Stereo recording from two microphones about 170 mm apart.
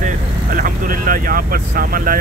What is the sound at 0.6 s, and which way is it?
Speech, 55° right (ahead or behind).